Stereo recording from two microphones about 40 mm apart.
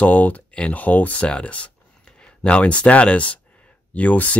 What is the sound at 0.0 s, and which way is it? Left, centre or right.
Speech, left.